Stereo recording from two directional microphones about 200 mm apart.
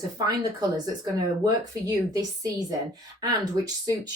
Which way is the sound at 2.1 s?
20° right (ahead or behind).